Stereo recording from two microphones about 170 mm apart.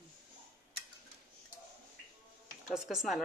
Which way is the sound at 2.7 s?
Centre (ahead or behind).